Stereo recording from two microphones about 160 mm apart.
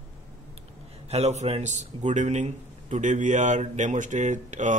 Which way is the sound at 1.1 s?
45° right (ahead or behind).